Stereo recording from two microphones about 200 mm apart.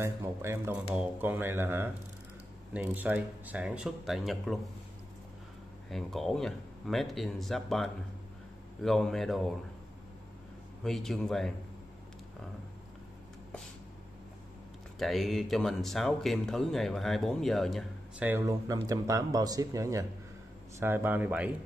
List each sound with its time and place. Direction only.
0.0 s speech: 15° right (ahead or behind)
5.9 s speech: centre (ahead or behind)
10.8 s speech: centre (ahead or behind)
15.0 s speech: centre (ahead or behind)
18.3 s speech: 15° right (ahead or behind)